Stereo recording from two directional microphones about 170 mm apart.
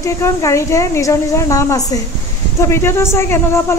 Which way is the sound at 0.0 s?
15° left (ahead or behind).